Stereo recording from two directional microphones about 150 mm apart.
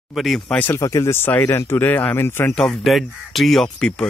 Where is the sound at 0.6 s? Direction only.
15° left (ahead or behind).